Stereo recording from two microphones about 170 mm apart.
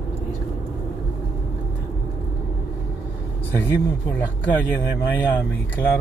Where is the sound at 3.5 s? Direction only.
10° left (ahead or behind).